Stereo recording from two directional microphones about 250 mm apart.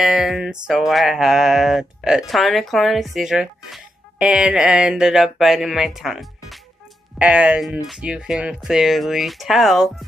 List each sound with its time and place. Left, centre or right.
0.0 s music: centre